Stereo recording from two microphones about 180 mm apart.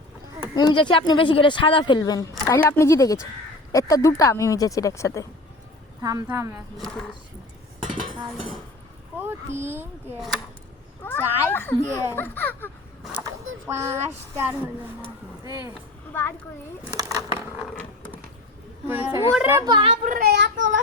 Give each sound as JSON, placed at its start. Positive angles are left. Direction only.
{"t": 0.5, "sound": "speech", "side_deg": 25}
{"t": 6.0, "sound": "speech", "side_deg": -20}
{"t": 6.5, "sound": "speech", "side_deg": 0}
{"t": 9.1, "sound": "speech", "side_deg": -10}
{"t": 11.0, "sound": "speech", "side_deg": 10}
{"t": 13.7, "sound": "speech", "side_deg": -15}
{"t": 16.9, "sound": "speech", "side_deg": -15}
{"t": 18.9, "sound": "speech", "side_deg": -10}
{"t": 19.6, "sound": "a child's voice", "side_deg": -20}
{"t": 19.9, "sound": "a child's voice", "side_deg": -45}
{"t": 20.2, "sound": "speech", "side_deg": -75}